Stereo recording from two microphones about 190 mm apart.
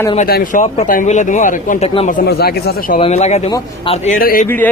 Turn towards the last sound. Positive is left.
turn(degrees=45)  # may be behind; listen again after turning